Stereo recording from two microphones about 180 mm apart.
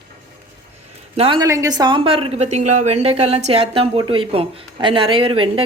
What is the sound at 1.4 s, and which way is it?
A woman's voice, 20° right (ahead or behind).